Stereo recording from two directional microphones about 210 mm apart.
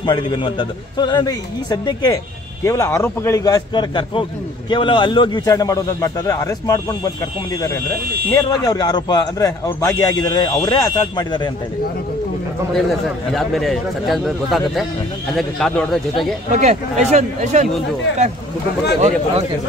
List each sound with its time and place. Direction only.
0.0 s a man's voice: 20° left (ahead or behind)
8.3 s a man's voice: 15° left (ahead or behind)
12.7 s a man's voice: centre (ahead or behind)
16.5 s speech: 35° right (ahead or behind)
18.9 s a man's voice: 30° right (ahead or behind)